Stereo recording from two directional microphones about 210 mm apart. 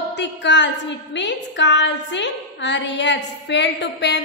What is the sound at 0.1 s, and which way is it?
A woman's voice, 55° left (ahead or behind).